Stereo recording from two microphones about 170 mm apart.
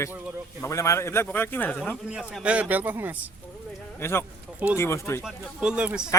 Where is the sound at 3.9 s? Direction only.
15° left (ahead or behind).